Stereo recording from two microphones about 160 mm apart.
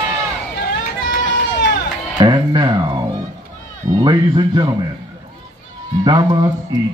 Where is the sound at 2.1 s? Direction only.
25° right (ahead or behind).